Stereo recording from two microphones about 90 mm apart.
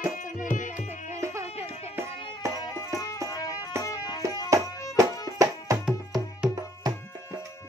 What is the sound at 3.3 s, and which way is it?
Music, 45° left (ahead or behind).